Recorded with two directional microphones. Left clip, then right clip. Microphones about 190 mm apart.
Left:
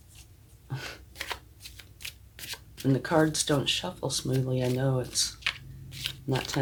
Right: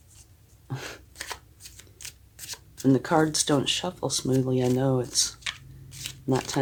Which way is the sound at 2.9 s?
50° right (ahead or behind).